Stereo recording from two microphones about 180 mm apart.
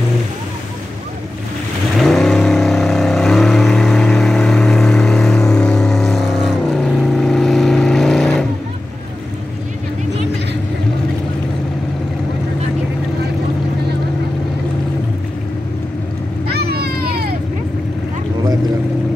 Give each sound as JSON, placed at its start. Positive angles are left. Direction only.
{"t": 2.0, "sound": "vehicle", "side_deg": 0}
{"t": 16.4, "sound": "vehicle", "side_deg": -60}